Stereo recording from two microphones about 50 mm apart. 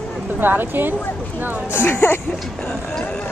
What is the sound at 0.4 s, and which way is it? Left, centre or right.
Speech, right.